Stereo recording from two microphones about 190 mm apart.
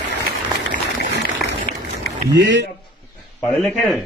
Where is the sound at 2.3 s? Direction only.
70° right (ahead or behind).